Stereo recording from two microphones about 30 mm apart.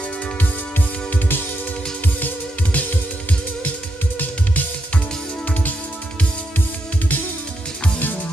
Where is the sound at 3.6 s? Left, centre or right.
Left.